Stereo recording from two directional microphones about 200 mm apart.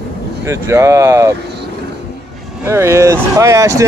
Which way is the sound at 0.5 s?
15° right (ahead or behind).